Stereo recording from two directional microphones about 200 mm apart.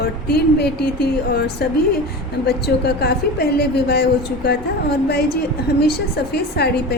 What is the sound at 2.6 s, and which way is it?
A woman's voice, 55° left (ahead or behind).